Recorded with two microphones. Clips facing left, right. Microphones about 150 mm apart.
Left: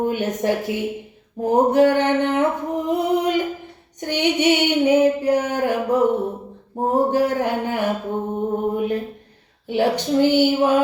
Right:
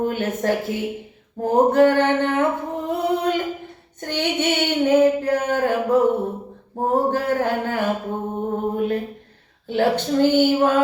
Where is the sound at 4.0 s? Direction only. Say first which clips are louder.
Left 3 dB; 15° left (ahead or behind).